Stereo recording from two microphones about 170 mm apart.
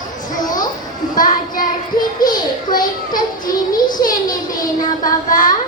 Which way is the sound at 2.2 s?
25° left (ahead or behind).